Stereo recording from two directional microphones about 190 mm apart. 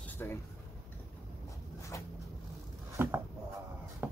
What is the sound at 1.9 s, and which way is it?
Speech, 15° left (ahead or behind).